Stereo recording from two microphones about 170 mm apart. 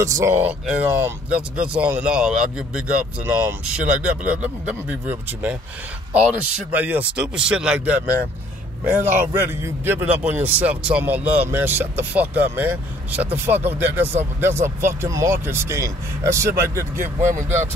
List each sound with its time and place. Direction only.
0.0 s speech: 15° right (ahead or behind)
6.7 s speech: 10° right (ahead or behind)
17.2 s speech: 45° right (ahead or behind)